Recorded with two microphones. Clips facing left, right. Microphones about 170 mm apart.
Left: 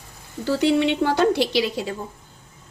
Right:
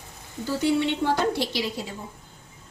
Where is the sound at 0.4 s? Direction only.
75° left (ahead or behind).